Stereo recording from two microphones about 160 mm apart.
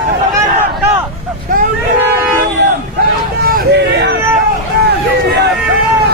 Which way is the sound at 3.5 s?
90° right.